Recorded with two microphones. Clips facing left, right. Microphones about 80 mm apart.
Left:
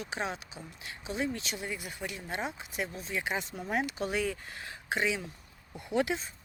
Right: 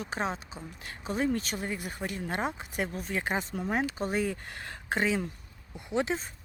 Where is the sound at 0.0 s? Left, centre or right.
Right.